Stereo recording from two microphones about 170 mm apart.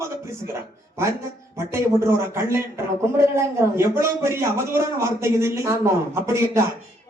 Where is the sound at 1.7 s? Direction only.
15° right (ahead or behind).